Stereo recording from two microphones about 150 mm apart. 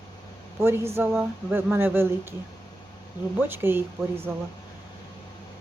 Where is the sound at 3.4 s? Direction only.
15° right (ahead or behind).